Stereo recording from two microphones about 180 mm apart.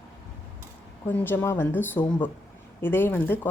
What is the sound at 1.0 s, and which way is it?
A woman's voice, 10° left (ahead or behind).